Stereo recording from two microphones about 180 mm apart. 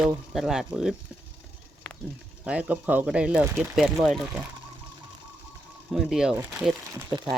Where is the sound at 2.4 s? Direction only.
10° right (ahead or behind).